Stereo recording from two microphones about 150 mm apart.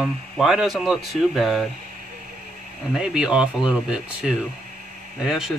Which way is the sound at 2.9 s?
5° right (ahead or behind).